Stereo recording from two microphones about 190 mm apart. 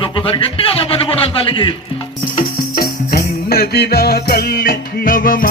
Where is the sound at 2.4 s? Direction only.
50° left (ahead or behind).